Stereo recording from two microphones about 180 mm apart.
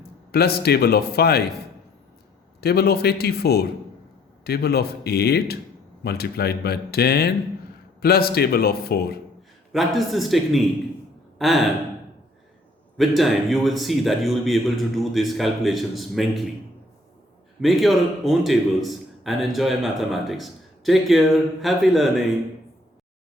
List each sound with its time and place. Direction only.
0.3 s speech: 60° left (ahead or behind)
9.7 s a man's voice: centre (ahead or behind)
13.0 s a man's voice: centre (ahead or behind)
17.6 s a man's voice: centre (ahead or behind)